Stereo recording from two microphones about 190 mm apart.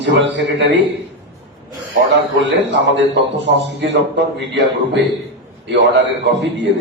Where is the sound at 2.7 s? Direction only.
65° right (ahead or behind).